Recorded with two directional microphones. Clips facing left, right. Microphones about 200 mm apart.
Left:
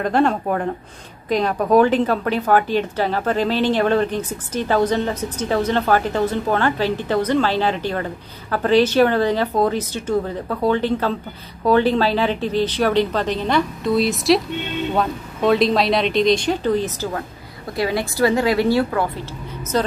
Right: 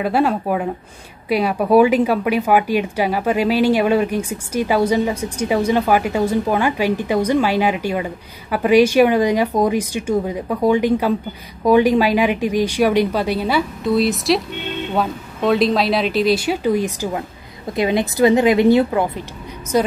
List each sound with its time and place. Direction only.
0.0 s a woman's voice: 5° right (ahead or behind)